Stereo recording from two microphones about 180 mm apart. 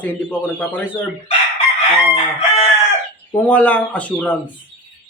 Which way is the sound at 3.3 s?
10° left (ahead or behind).